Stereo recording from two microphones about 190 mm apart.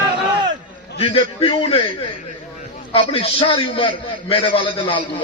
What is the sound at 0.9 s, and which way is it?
Speech, 30° left (ahead or behind).